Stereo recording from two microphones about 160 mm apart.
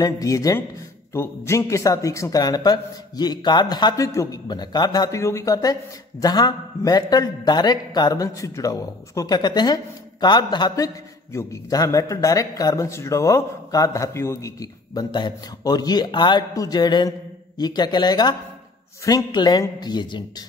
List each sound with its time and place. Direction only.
0.0 s speech: 20° left (ahead or behind)